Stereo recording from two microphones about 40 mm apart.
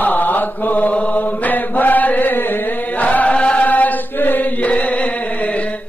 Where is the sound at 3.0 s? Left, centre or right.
Left.